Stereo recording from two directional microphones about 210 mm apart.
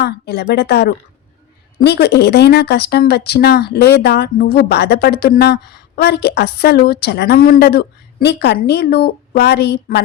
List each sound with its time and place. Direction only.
0.0 s speech: 50° left (ahead or behind)